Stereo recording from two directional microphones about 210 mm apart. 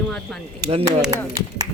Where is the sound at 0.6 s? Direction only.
25° right (ahead or behind).